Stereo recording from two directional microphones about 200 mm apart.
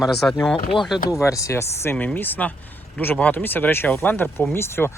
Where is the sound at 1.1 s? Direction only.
15° left (ahead or behind).